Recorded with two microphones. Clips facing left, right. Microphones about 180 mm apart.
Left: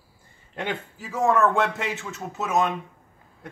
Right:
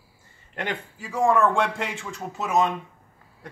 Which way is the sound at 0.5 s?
5° left (ahead or behind).